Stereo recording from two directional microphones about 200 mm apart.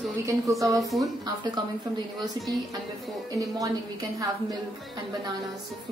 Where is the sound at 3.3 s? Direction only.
20° right (ahead or behind).